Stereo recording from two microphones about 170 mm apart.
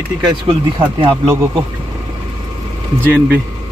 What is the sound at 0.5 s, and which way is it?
Speech, 30° right (ahead or behind).